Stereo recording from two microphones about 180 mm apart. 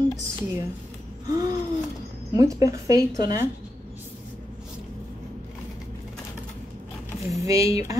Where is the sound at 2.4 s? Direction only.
20° right (ahead or behind).